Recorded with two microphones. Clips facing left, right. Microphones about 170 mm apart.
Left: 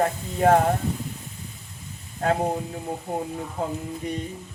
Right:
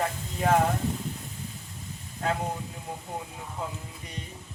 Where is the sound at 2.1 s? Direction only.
45° left (ahead or behind).